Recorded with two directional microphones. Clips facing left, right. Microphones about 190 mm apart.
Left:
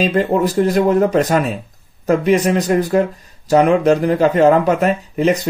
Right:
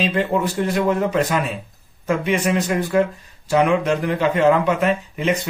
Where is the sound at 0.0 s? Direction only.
40° left (ahead or behind).